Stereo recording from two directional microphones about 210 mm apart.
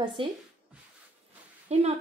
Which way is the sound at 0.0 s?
25° right (ahead or behind).